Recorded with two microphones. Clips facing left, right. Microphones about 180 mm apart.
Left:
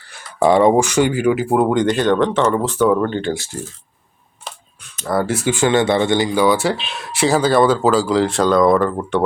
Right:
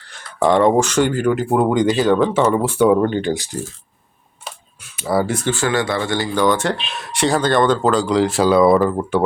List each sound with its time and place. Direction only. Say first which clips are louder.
0.0 s speech: left 2 dB; 5° left (ahead or behind); by 3.6 s 15° right (ahead or behind)
4.4 s a sound: even; 5° right (ahead or behind)
5.5 s speech: left 7 dB; 20° left (ahead or behind); by 9.2 s 5° right (ahead or behind)